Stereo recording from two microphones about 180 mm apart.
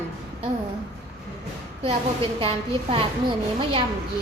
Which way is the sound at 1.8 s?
30° right (ahead or behind).